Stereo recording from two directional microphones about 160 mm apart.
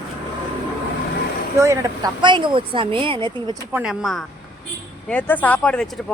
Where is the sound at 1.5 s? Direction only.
20° right (ahead or behind).